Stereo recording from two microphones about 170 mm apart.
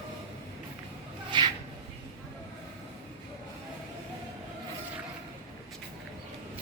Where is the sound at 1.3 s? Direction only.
25° right (ahead or behind).